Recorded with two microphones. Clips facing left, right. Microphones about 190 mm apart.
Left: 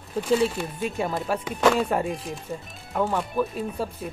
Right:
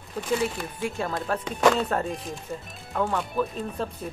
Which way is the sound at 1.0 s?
5° left (ahead or behind).